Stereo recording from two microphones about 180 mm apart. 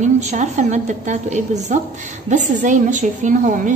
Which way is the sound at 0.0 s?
40° right (ahead or behind).